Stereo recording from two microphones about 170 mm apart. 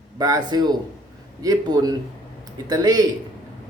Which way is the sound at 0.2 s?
25° right (ahead or behind).